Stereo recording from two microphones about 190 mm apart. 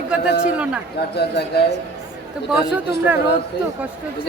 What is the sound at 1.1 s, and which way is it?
Speech, 60° left (ahead or behind).